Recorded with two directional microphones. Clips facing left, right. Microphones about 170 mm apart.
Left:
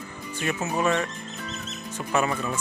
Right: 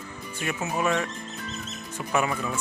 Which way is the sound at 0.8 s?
5° right (ahead or behind).